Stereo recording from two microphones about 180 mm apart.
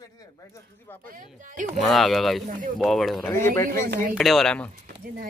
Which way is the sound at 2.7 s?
Centre (ahead or behind).